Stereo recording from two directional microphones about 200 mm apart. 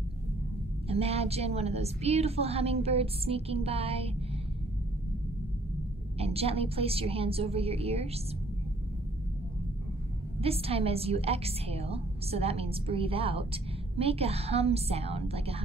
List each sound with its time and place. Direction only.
0.8 s a woman's voice: 30° right (ahead or behind)
6.1 s a woman's voice: 30° right (ahead or behind)
10.4 s a woman's voice: 30° right (ahead or behind)